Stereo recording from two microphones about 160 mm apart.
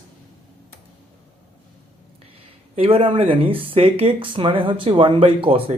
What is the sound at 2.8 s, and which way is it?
Speech, 35° right (ahead or behind).